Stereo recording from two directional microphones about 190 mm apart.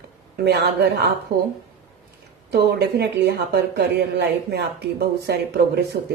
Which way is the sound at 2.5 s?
60° right (ahead or behind).